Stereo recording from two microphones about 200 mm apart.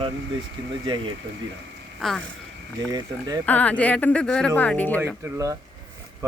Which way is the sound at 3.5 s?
5° left (ahead or behind).